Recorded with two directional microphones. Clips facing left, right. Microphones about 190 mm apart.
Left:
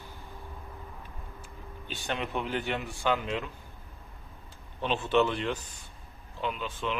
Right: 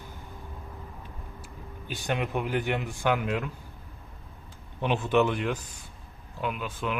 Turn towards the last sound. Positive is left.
turn(degrees=-10)  # may be behind; listen again after turning